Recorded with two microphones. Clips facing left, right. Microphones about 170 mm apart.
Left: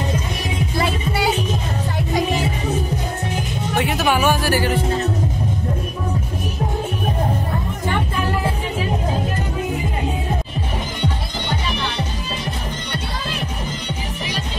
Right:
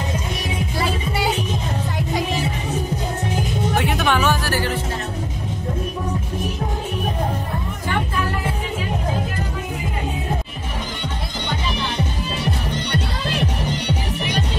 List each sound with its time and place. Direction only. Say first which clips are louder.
3.7 s music: left 2 dB; centre (ahead or behind)
13.3 s music: right 7 dB; 75° right (ahead or behind)